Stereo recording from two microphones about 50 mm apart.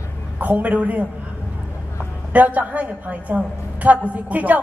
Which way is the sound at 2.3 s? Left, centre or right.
Right.